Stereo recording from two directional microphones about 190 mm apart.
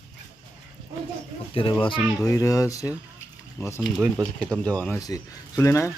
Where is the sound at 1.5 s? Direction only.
25° left (ahead or behind); by 5.0 s 5° left (ahead or behind).